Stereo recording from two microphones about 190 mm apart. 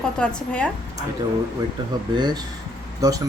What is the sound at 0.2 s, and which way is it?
Speech, 5° left (ahead or behind).